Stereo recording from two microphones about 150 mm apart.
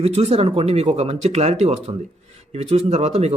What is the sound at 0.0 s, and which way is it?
Speech, 45° right (ahead or behind).